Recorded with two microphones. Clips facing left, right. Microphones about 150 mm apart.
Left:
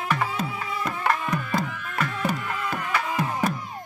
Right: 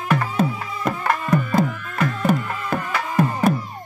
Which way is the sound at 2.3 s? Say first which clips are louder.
Right 7 dB; 50° right (ahead or behind).